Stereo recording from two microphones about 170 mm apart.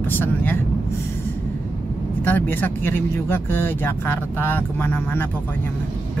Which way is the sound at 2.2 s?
10° left (ahead or behind).